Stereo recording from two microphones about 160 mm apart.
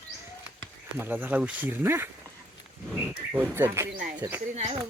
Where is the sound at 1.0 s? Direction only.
10° right (ahead or behind).